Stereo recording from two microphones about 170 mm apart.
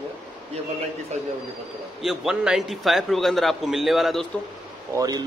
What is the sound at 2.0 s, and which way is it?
A man's voice, 5° right (ahead or behind).